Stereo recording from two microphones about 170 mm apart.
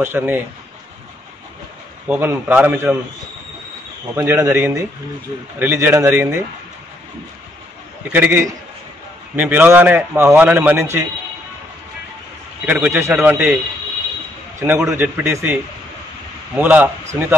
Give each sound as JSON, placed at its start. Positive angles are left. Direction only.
{"t": 0.0, "sound": "a man's voice", "side_deg": -10}
{"t": 2.0, "sound": "a man's voice", "side_deg": -10}
{"t": 4.1, "sound": "a man's voice", "side_deg": -10}
{"t": 8.1, "sound": "a man's voice", "side_deg": -10}
{"t": 12.6, "sound": "a man's voice", "side_deg": -10}
{"t": 14.7, "sound": "a man's voice", "side_deg": -10}